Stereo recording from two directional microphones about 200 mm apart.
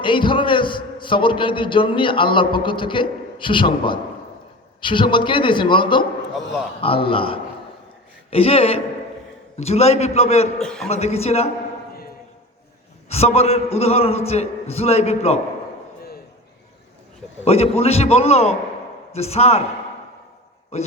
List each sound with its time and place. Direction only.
0.0 s a man's voice: 25° left (ahead or behind)
10.6 s a man's voice: centre (ahead or behind)
10.8 s a man's voice: 30° left (ahead or behind)
13.1 s a man's voice: 30° left (ahead or behind)
17.4 s a man's voice: 30° left (ahead or behind)
20.7 s a man's voice: 30° left (ahead or behind)